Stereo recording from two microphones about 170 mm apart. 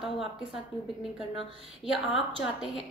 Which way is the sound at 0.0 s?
Centre (ahead or behind).